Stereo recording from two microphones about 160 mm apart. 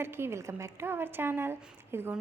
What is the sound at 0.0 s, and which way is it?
A woman's voice, 15° right (ahead or behind).